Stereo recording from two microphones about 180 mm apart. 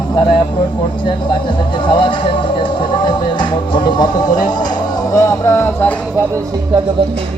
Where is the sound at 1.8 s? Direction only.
25° left (ahead or behind).